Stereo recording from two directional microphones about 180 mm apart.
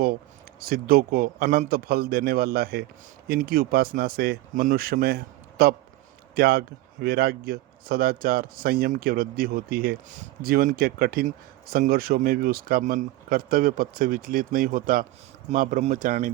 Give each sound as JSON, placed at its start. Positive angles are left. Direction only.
{"t": 0.6, "sound": "a man's voice", "side_deg": -55}